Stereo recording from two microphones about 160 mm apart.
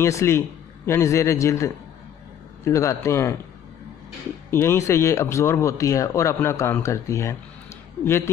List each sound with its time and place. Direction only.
0.0 s speech: 15° left (ahead or behind)
4.5 s speech: 15° left (ahead or behind)